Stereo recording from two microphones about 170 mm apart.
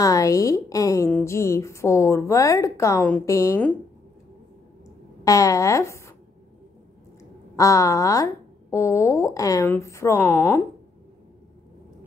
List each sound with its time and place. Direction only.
0.0 s a woman's voice: 20° left (ahead or behind)
5.2 s speech: 20° left (ahead or behind)
7.5 s a woman's voice: 20° left (ahead or behind)